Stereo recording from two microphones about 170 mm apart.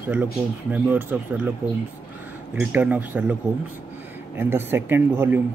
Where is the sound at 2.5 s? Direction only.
10° right (ahead or behind).